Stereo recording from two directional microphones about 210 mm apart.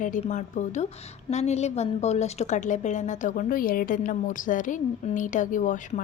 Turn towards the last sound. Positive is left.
turn(degrees=40)  # may be behind; listen again after turning